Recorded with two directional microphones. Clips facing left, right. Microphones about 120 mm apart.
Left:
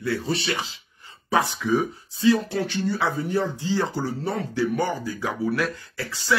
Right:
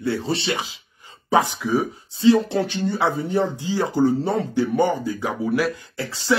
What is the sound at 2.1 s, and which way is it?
Speech, 25° right (ahead or behind).